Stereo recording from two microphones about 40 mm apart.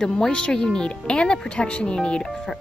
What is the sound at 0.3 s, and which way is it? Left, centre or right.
Speech, left.